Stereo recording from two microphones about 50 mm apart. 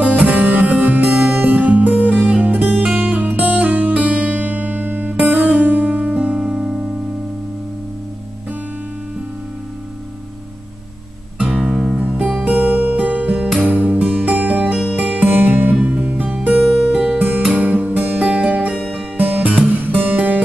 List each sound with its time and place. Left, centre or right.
0.0 s music: right
11.3 s music: centre
12.5 s music: right
16.9 s music: centre
17.5 s music: right